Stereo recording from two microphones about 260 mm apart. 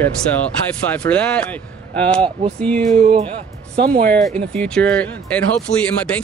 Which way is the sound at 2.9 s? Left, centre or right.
Right.